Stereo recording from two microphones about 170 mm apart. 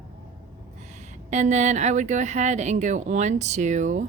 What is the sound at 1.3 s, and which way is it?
A woman's voice, 45° right (ahead or behind).